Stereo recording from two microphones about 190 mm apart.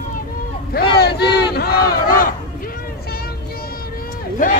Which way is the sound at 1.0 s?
60° left (ahead or behind).